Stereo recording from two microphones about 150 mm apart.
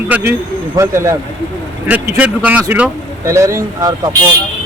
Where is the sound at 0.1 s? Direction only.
15° right (ahead or behind).